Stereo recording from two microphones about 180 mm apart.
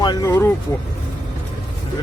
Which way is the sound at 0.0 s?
20° left (ahead or behind).